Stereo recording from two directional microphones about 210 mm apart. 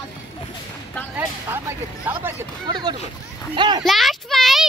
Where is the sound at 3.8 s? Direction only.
Centre (ahead or behind).